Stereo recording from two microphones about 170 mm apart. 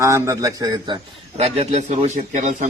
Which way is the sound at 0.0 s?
15° right (ahead or behind).